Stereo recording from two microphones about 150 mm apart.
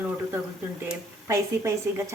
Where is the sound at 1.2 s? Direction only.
20° right (ahead or behind).